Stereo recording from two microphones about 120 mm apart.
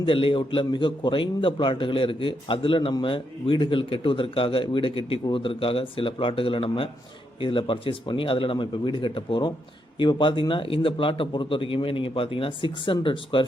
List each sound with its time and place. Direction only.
0.0 s a man's voice: 50° left (ahead or behind)